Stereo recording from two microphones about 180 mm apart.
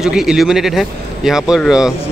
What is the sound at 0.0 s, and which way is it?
Speech, 5° right (ahead or behind).